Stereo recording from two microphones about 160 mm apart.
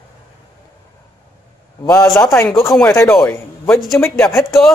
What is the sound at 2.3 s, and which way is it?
A man's voice, 20° left (ahead or behind).